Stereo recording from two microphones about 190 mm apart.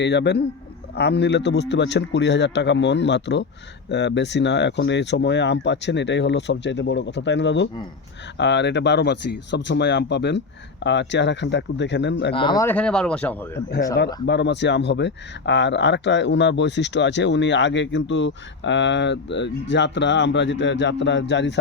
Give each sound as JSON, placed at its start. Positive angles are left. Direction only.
{"t": 0.0, "sound": "a man's voice", "side_deg": 65}
{"t": 12.3, "sound": "speech", "side_deg": 25}
{"t": 12.6, "sound": "speech", "side_deg": 5}
{"t": 14.3, "sound": "speech", "side_deg": 65}